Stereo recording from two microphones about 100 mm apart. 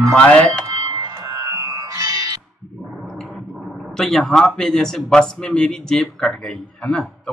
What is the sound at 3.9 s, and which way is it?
Speech, 5° left (ahead or behind).